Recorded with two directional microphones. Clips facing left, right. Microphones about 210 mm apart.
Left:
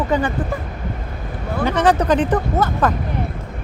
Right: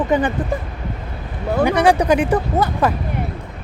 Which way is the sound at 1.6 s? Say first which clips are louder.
Right 2 dB; 10° right (ahead or behind).